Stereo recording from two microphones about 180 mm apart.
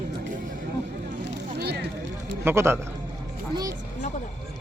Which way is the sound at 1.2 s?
70° right (ahead or behind).